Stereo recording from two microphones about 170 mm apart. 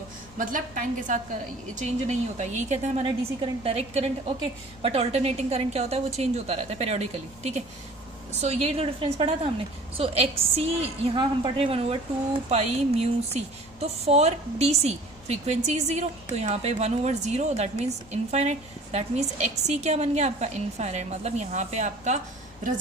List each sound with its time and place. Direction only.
0.3 s speech: 50° right (ahead or behind)
3.0 s a woman's voice: 30° right (ahead or behind)